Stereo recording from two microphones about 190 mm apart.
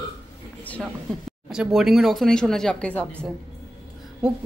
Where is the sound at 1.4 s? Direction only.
Centre (ahead or behind).